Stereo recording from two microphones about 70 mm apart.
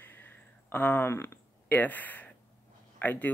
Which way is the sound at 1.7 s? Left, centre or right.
Left.